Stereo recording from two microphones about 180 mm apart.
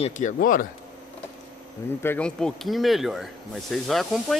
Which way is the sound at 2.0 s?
10° left (ahead or behind).